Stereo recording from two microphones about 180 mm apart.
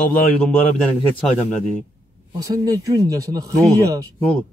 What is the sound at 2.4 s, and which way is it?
A man's voice, 20° right (ahead or behind).